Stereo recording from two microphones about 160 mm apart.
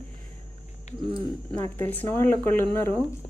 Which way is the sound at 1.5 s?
15° left (ahead or behind).